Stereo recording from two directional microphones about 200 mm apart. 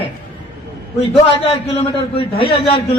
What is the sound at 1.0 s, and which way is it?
A man's voice, 30° left (ahead or behind).